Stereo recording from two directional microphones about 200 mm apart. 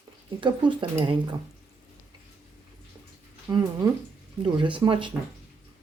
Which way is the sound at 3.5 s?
15° right (ahead or behind).